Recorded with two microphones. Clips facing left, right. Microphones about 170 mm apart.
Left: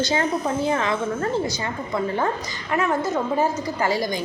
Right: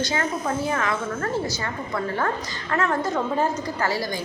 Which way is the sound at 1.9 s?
20° left (ahead or behind).